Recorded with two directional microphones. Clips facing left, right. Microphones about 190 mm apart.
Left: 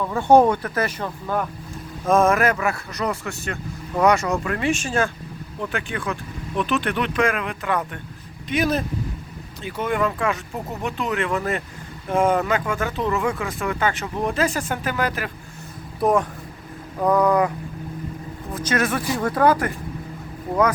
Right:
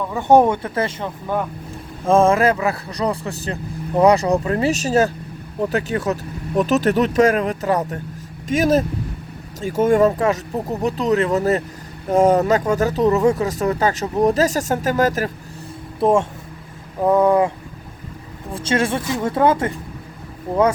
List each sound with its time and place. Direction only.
0.1 s speech: 20° right (ahead or behind); by 15.3 s 40° right (ahead or behind)
16.0 s speech: 25° right (ahead or behind)
18.5 s speech: 30° right (ahead or behind)